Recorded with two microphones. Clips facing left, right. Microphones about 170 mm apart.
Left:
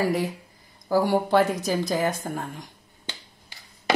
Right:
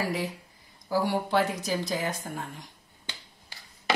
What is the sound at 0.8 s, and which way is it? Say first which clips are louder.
A woman's voice: left 5 dB; 50° left (ahead or behind).